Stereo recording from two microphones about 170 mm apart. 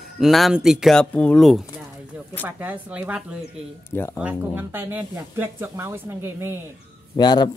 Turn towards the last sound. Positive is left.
turn(degrees=25)  # may be behind; listen again after turning